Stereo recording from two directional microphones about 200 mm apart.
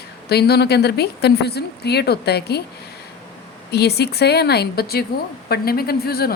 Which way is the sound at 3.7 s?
55° left (ahead or behind).